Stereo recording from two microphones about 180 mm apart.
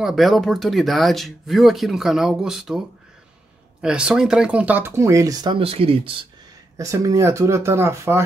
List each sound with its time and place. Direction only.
0.0 s speech: centre (ahead or behind)
3.8 s speech: 5° right (ahead or behind); by 6.1 s 30° right (ahead or behind)
6.8 s speech: 20° right (ahead or behind)